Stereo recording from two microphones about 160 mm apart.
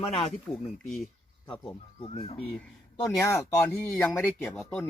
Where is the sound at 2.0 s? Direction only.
35° left (ahead or behind).